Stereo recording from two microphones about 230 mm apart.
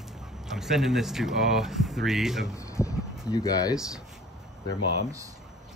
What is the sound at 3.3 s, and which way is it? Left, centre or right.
Speech, centre.